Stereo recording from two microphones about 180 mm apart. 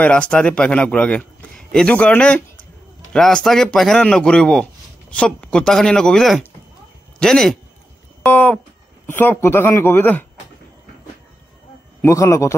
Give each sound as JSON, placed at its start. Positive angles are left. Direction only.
{"t": 0.0, "sound": "speech", "side_deg": 5}
{"t": 12.0, "sound": "speech", "side_deg": 15}